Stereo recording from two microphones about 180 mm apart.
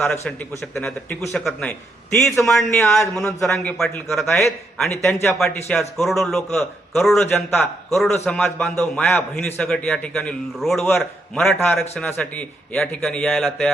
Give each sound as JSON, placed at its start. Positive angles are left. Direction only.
{"t": 0.0, "sound": "a man's voice", "side_deg": 5}
{"t": 4.3, "sound": "a man's voice", "side_deg": 15}
{"t": 4.8, "sound": "a man's voice", "side_deg": 5}
{"t": 7.9, "sound": "a man's voice", "side_deg": 0}